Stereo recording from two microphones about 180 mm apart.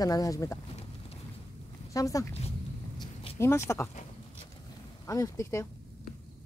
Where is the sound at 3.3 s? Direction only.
15° left (ahead or behind).